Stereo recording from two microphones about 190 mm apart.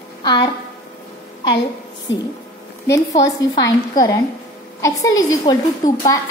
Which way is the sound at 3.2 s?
20° left (ahead or behind).